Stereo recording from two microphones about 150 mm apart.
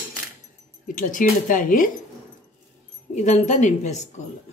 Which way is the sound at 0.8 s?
60° left (ahead or behind).